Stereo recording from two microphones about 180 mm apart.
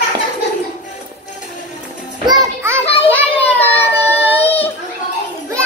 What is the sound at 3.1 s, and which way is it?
Child singing, 10° left (ahead or behind).